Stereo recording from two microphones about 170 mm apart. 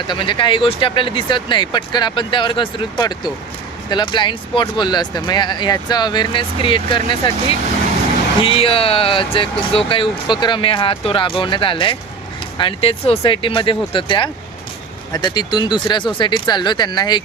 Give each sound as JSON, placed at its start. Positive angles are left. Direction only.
{"t": 0.1, "sound": "speech", "side_deg": 30}
{"t": 8.4, "sound": "speech", "side_deg": 30}